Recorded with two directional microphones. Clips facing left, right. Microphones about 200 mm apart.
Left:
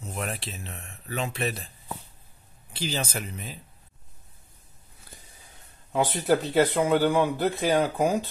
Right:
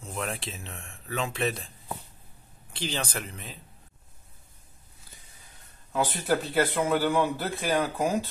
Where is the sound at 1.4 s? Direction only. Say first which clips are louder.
Right 1 dB; 5° left (ahead or behind).